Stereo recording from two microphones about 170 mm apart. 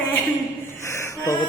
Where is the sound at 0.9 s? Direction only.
20° left (ahead or behind).